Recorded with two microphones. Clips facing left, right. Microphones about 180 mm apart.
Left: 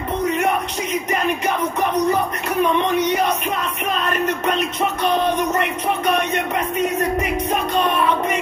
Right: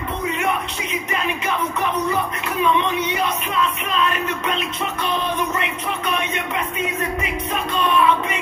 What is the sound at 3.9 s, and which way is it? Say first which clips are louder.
Speech: left 1 dB; 45° left (ahead or behind).